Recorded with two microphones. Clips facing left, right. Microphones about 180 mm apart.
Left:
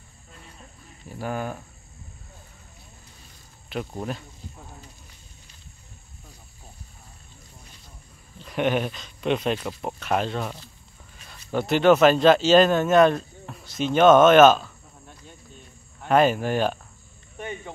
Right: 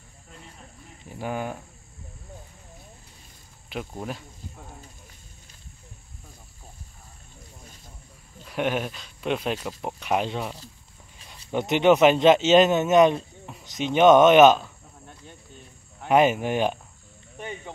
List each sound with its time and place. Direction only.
1.1 s speech: 15° right (ahead or behind)
3.9 s speech: 5° right (ahead or behind)
8.5 s speech: 5° right (ahead or behind)
16.1 s speech: 15° right (ahead or behind)
17.4 s cricket: 15° right (ahead or behind)